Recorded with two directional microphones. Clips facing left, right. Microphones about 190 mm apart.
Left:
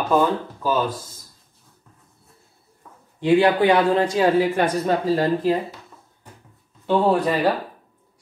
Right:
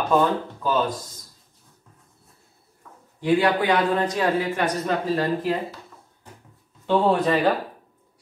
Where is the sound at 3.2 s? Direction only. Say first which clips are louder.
Left 4 dB; 25° left (ahead or behind).